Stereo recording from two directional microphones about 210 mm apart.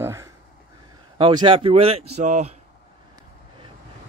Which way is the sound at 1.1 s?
25° right (ahead or behind).